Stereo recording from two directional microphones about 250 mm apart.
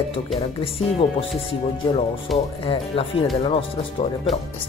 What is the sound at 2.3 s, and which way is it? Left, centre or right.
Speech, centre.